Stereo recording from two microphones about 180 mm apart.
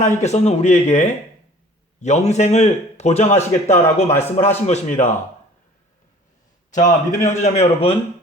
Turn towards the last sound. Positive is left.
turn(degrees=35)  # may be behind; listen again after turning